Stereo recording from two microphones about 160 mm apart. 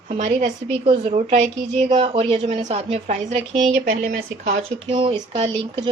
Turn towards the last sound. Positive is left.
turn(degrees=-35)  # may be behind; listen again after turning